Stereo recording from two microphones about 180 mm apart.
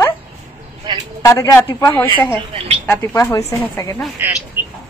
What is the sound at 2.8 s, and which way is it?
A woman's voice, 10° left (ahead or behind).